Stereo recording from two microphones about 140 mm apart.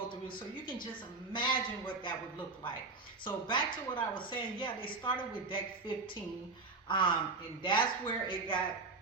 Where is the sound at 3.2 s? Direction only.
35° left (ahead or behind).